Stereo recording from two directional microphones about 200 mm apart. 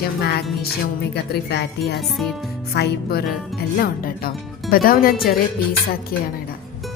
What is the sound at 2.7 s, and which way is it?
Speech, 55° left (ahead or behind).